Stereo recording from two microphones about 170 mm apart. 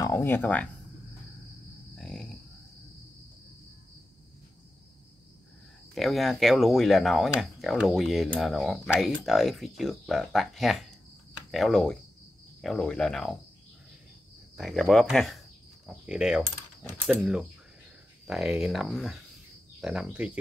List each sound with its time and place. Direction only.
0.0 s speech: 15° left (ahead or behind)
2.0 s a sound: centre (ahead or behind)
5.9 s speech: centre (ahead or behind)
14.6 s speech: centre (ahead or behind)
15.9 s mechanisms: 5° right (ahead or behind)
17.1 s speech: 5° right (ahead or behind)